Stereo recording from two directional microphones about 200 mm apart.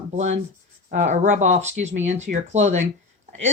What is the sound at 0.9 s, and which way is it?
Speech, 40° right (ahead or behind).